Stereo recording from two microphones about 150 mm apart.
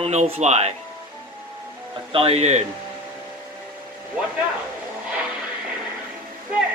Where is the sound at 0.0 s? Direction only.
45° right (ahead or behind).